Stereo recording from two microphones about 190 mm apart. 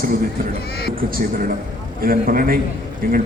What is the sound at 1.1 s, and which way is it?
A man's voice, 50° right (ahead or behind).